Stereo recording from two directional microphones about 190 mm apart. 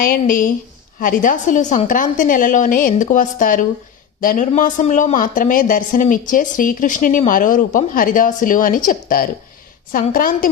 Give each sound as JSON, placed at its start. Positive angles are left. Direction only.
{"t": 0.0, "sound": "a woman's voice", "side_deg": 45}